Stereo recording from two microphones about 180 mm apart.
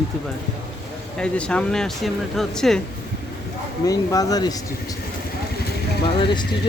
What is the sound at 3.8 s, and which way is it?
Speech, 20° left (ahead or behind).